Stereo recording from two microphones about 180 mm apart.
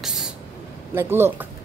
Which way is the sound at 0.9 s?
15° right (ahead or behind).